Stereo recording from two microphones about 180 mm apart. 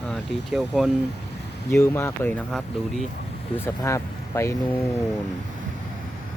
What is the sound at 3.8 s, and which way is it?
Speech, 15° left (ahead or behind).